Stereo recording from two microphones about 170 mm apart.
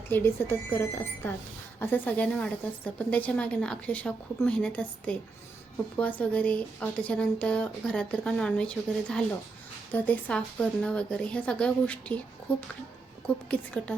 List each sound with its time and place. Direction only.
0.1 s a woman's voice: 15° left (ahead or behind)